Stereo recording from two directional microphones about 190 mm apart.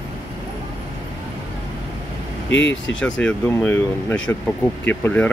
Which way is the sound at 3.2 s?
10° left (ahead or behind).